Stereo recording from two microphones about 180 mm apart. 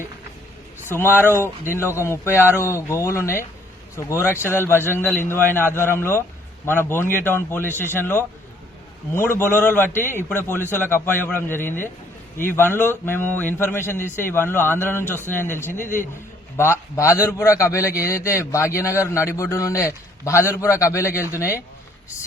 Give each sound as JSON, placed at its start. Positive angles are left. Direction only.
{"t": 0.9, "sound": "a man's voice", "side_deg": 15}